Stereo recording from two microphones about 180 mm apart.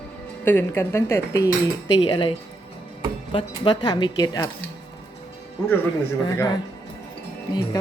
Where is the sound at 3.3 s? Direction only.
25° left (ahead or behind).